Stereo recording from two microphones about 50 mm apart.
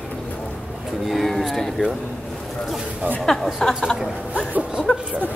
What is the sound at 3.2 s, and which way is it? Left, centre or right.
Speech, centre.